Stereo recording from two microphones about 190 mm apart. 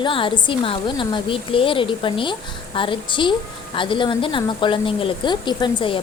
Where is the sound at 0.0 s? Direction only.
25° left (ahead or behind).